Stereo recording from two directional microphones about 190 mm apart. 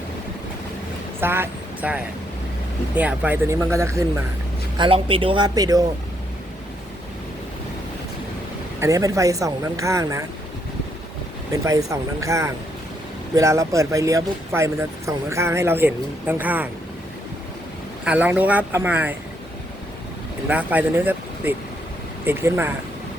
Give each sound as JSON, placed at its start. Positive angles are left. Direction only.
{"t": 1.2, "sound": "speech", "side_deg": -10}
{"t": 4.8, "sound": "speech", "side_deg": -30}
{"t": 8.8, "sound": "speech", "side_deg": -15}
{"t": 11.5, "sound": "speech", "side_deg": -15}
{"t": 18.0, "sound": "speech", "side_deg": -10}
{"t": 20.5, "sound": "speech", "side_deg": -10}